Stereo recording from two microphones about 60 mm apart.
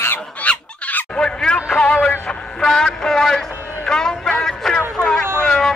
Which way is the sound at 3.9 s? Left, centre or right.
Centre.